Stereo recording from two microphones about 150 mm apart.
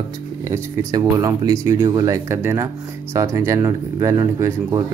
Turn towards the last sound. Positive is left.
turn(degrees=-20)  # may be behind; listen again after turning